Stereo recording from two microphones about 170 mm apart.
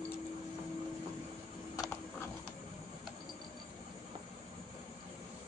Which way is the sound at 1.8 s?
15° left (ahead or behind).